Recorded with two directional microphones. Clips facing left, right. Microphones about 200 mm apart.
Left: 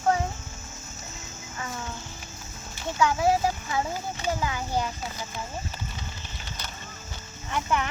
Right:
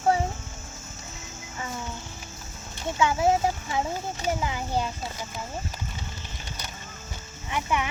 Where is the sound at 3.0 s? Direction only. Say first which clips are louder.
Even; 25° right (ahead or behind).